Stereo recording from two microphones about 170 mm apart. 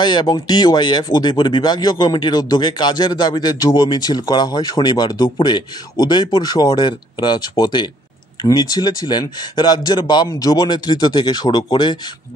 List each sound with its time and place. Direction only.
0.0 s speech: 25° left (ahead or behind)